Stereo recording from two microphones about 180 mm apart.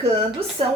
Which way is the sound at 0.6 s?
30° right (ahead or behind).